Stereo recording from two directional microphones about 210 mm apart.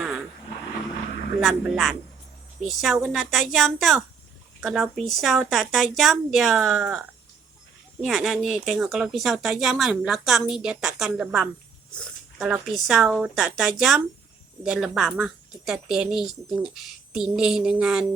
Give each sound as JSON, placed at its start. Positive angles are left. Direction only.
{"t": 1.4, "sound": "speech", "side_deg": 0}
{"t": 11.9, "sound": "a sound", "side_deg": 0}
{"t": 12.5, "sound": "speech", "side_deg": 0}